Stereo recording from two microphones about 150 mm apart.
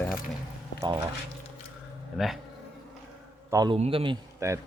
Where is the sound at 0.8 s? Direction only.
30° right (ahead or behind).